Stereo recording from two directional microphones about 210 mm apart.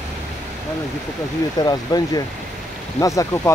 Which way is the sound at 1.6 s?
20° left (ahead or behind).